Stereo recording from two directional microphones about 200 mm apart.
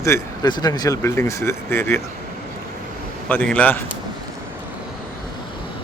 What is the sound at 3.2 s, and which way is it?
Speech, 5° left (ahead or behind).